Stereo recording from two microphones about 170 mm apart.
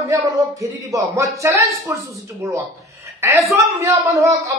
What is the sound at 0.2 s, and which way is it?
Speech, 20° right (ahead or behind).